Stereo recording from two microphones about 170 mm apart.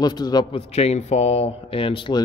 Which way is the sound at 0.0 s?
25° left (ahead or behind).